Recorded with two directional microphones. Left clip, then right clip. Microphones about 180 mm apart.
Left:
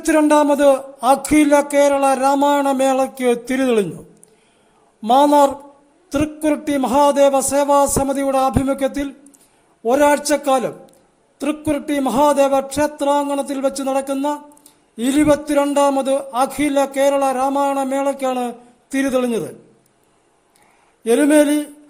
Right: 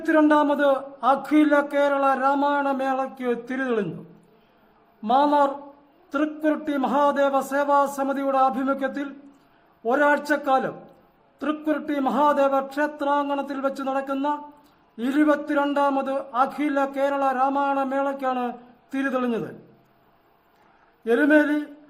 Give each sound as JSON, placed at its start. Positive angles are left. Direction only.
{"t": 0.0, "sound": "a man's voice", "side_deg": 35}
{"t": 5.0, "sound": "a man's voice", "side_deg": 40}
{"t": 21.0, "sound": "a man's voice", "side_deg": 35}